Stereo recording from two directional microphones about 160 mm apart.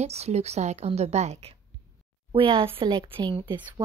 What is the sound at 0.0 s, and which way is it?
A woman's voice, 45° right (ahead or behind).